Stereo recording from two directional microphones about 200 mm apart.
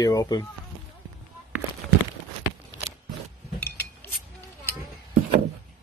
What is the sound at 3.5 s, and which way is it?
Chink, 10° left (ahead or behind).